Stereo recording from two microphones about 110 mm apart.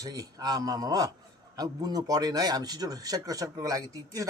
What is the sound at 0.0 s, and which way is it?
Speech, 35° right (ahead or behind).